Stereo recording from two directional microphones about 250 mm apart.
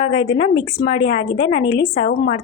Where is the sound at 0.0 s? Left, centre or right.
Left.